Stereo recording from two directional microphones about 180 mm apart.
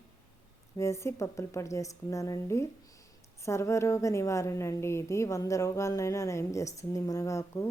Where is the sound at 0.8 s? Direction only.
15° left (ahead or behind).